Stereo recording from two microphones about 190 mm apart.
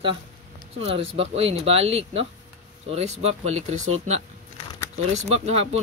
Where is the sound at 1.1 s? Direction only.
30° right (ahead or behind).